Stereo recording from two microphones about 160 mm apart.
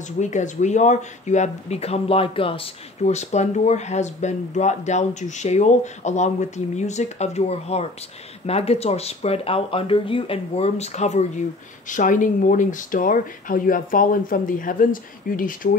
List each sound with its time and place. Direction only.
0.2 s speech: 50° left (ahead or behind)